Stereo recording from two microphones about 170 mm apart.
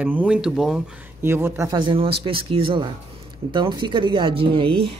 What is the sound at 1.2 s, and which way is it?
Speech, 15° right (ahead or behind).